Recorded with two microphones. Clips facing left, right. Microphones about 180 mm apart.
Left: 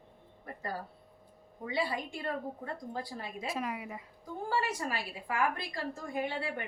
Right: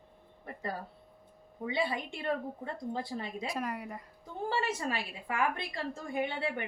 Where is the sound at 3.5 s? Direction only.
5° left (ahead or behind).